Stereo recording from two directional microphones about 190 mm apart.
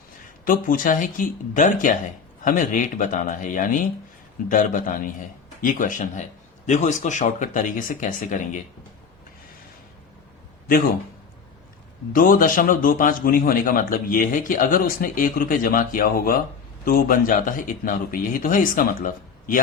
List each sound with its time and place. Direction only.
0.4 s speech: 45° left (ahead or behind)
12.1 s speech: 45° left (ahead or behind)